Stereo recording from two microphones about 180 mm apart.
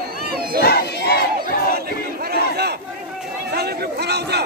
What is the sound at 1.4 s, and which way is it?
Battle cry, 60° right (ahead or behind).